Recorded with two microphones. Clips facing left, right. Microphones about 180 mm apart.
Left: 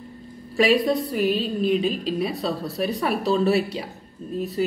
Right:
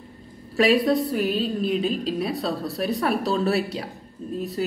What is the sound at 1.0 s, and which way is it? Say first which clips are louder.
A woman's voice: left 1 dB; centre (ahead or behind).